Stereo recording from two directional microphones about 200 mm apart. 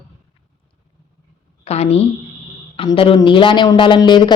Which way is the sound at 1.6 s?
30° left (ahead or behind).